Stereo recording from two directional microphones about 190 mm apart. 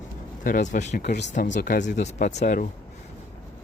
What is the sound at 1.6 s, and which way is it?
Speech, 60° left (ahead or behind).